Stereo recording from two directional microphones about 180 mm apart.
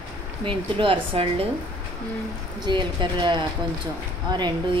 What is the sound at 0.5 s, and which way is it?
Speech, 30° right (ahead or behind).